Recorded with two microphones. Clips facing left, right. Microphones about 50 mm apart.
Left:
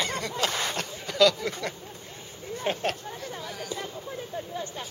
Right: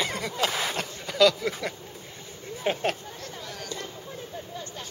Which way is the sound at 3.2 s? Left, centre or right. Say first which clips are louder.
Left 2 dB; centre.